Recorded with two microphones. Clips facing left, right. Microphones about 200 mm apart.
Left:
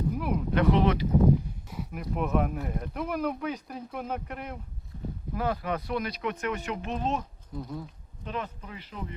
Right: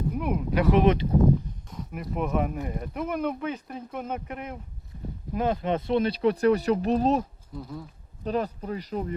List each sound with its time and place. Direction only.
0.1 s a sound: centre (ahead or behind)
1.7 s speech: 5° left (ahead or behind)
5.3 s speech: 20° right (ahead or behind); by 7.3 s 40° right (ahead or behind)
7.5 s speech: 5° right (ahead or behind)
8.2 s speech: 40° right (ahead or behind)